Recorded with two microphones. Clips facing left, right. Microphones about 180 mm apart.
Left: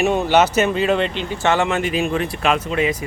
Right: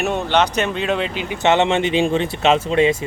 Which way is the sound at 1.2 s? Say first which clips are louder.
Right 2 dB; 15° right (ahead or behind).